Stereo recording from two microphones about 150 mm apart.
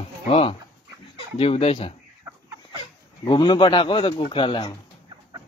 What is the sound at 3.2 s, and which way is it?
Speech, 30° left (ahead or behind).